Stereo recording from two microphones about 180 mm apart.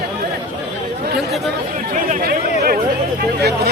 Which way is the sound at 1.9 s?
50° right (ahead or behind).